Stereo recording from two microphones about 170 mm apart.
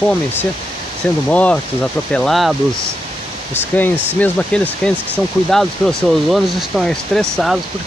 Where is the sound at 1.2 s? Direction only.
5° left (ahead or behind).